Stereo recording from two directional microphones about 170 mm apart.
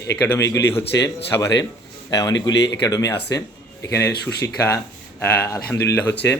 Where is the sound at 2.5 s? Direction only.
90° left.